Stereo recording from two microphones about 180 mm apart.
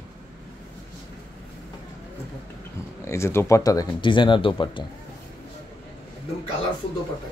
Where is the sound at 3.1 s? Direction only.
15° left (ahead or behind).